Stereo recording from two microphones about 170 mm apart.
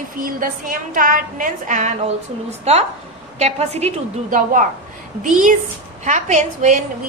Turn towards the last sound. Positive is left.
turn(degrees=-45)  # may be behind; listen again after turning